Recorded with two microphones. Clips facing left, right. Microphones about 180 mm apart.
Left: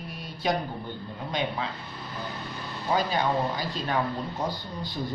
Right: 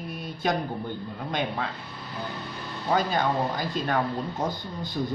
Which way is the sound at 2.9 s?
50° right (ahead or behind).